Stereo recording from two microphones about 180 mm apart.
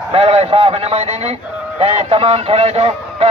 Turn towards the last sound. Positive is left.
turn(degrees=-35)  # may be behind; listen again after turning